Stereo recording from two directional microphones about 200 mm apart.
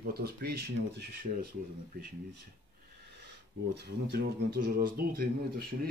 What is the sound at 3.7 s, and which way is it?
Speech, 55° right (ahead or behind).